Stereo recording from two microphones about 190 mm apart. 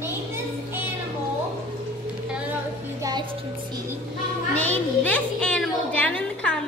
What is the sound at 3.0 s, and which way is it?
Music, 20° right (ahead or behind).